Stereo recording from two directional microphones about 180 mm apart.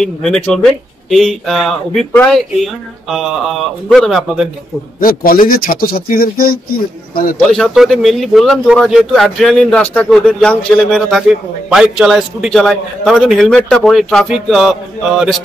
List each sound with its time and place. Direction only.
0.0 s a man's voice: 5° left (ahead or behind)
5.0 s speech: 55° left (ahead or behind)
7.4 s a man's voice: centre (ahead or behind)